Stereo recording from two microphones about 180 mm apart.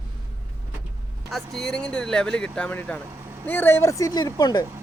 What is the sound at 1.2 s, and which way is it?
Speech, centre (ahead or behind).